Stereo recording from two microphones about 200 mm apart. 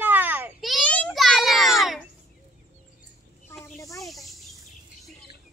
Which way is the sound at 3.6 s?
15° left (ahead or behind).